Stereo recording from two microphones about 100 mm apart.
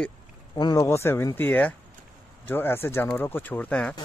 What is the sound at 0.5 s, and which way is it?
Speech, 40° left (ahead or behind).